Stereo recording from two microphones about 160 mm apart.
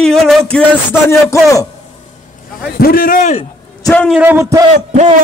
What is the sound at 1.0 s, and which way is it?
Speech, 15° left (ahead or behind).